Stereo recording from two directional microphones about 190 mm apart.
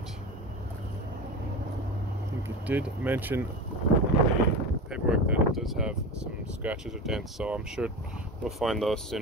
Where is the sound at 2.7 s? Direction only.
10° right (ahead or behind).